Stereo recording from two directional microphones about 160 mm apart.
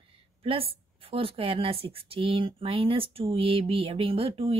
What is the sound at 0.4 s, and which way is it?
A woman's voice, 35° right (ahead or behind).